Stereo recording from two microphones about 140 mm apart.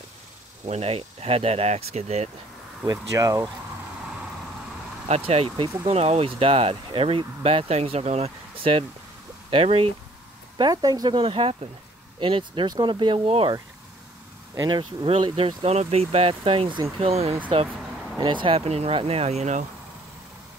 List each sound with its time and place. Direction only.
0.7 s speech: 45° right (ahead or behind)
2.8 s speech: 25° right (ahead or behind)
5.0 s speech: 50° right (ahead or behind)
10.6 s speech: 30° right (ahead or behind)
14.5 s speech: 30° right (ahead or behind); by 19.6 s 55° right (ahead or behind)